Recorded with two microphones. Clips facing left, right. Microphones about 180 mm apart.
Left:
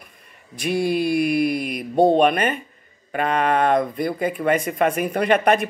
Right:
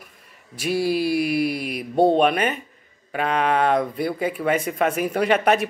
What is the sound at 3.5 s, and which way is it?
Speech, 5° right (ahead or behind).